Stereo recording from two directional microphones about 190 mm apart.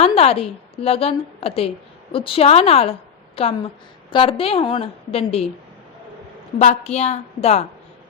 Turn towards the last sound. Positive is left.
turn(degrees=35)  # may be behind; listen again after turning